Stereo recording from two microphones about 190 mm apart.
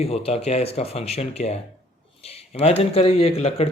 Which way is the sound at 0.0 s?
30° left (ahead or behind).